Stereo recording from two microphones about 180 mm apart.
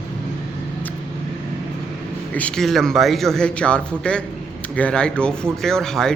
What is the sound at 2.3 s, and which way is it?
A man's voice, 5° left (ahead or behind).